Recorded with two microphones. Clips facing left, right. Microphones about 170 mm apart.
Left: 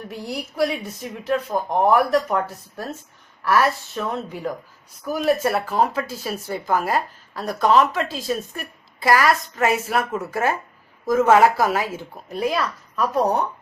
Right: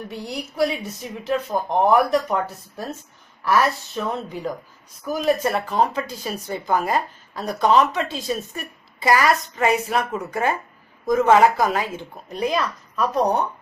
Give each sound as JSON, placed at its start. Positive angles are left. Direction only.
{"t": 0.1, "sound": "speech", "side_deg": 5}